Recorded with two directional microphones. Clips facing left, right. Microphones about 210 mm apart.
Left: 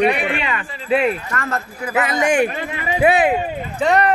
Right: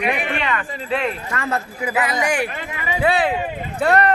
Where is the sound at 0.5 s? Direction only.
10° left (ahead or behind).